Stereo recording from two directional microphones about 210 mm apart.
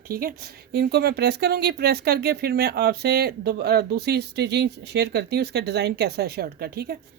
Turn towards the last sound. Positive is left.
turn(degrees=-45)  # may be behind; listen again after turning